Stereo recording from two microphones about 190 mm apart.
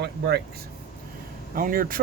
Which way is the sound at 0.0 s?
60° right (ahead or behind).